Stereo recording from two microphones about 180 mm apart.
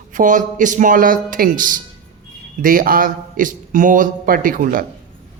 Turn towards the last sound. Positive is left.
turn(degrees=-50)  # may be behind; listen again after turning